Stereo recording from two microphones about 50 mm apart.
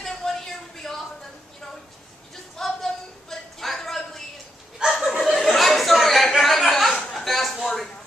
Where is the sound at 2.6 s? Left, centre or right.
Centre.